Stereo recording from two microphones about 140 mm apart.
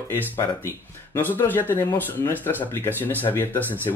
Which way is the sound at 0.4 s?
15° left (ahead or behind).